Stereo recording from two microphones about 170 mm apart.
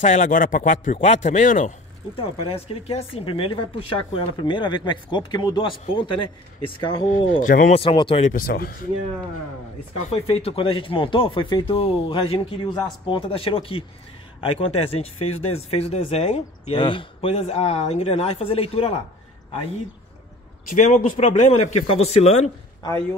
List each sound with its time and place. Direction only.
0.0 s a man's voice: 45° left (ahead or behind)
0.9 s a man's voice: 40° left (ahead or behind)
2.1 s speech: 35° left (ahead or behind)
7.1 s a man's voice: 50° left (ahead or behind)
7.8 s speech: 30° left (ahead or behind)
8.3 s speech: 55° left (ahead or behind)
10.2 s speech: 35° left (ahead or behind)
20.7 s speech: 45° left (ahead or behind)
22.8 s speech: 20° left (ahead or behind)